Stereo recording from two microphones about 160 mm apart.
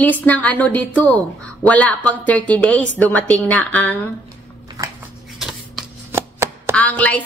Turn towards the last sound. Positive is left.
turn(degrees=10)  # may be behind; listen again after turning